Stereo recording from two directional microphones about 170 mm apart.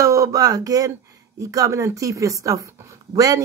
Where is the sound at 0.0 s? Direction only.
20° right (ahead or behind).